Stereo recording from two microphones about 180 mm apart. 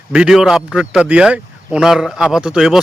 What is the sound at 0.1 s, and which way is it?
Speech, 5° right (ahead or behind).